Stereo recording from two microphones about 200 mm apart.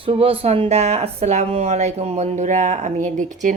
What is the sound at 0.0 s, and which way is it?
Speech, 25° right (ahead or behind).